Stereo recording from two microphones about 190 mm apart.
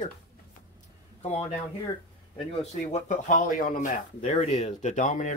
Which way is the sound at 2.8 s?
40° left (ahead or behind).